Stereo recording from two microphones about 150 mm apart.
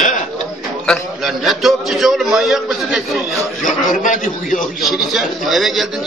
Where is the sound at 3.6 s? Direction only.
60° left (ahead or behind).